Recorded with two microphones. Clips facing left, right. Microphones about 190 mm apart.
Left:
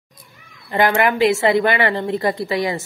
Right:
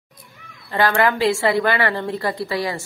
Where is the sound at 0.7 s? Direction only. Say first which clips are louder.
Left 1 dB; 20° left (ahead or behind).